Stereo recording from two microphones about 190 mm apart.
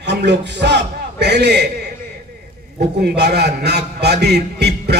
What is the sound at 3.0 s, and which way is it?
A man's voice, 60° right (ahead or behind).